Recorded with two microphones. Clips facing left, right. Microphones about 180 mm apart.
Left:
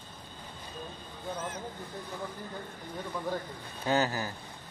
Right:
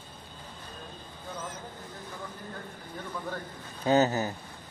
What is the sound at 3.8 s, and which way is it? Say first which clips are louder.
Speech: right 5 dB; 20° right (ahead or behind).